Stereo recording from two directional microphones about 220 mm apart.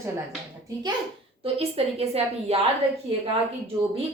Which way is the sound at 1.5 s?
25° right (ahead or behind).